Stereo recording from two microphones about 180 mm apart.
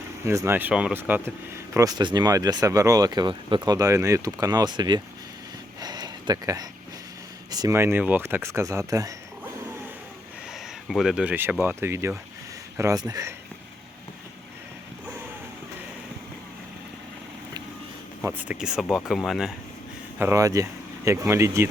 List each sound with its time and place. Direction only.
0.3 s speech: 15° right (ahead or behind)
5.8 s a sound: 25° right (ahead or behind)
7.5 s speech: 20° right (ahead or behind)
10.8 s speech: centre (ahead or behind); by 13.3 s 20° right (ahead or behind)
18.2 s speech: 10° right (ahead or behind)
20.1 s speech: 15° right (ahead or behind)